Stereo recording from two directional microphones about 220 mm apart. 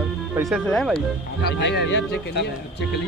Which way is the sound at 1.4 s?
50° left (ahead or behind).